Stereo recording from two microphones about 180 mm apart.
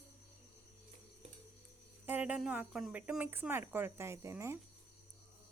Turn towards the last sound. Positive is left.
turn(degrees=-15)  # may be behind; listen again after turning